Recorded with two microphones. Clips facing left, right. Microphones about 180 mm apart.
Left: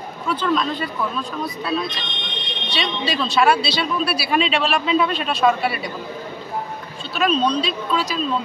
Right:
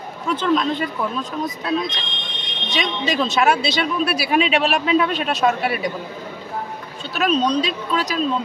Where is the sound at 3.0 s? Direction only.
20° right (ahead or behind).